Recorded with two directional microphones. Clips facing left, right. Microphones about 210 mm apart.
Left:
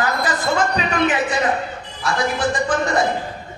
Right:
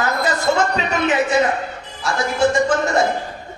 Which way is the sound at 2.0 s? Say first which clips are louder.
Right 3 dB; 25° right (ahead or behind).